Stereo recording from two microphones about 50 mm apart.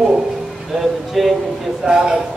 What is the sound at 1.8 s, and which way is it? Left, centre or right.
Speech, centre.